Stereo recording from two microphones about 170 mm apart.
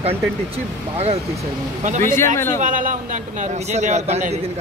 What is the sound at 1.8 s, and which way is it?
A man's voice, 45° right (ahead or behind).